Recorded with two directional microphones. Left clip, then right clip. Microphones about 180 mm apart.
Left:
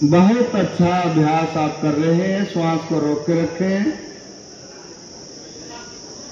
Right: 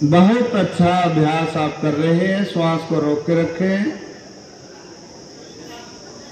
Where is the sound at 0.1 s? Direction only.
55° right (ahead or behind).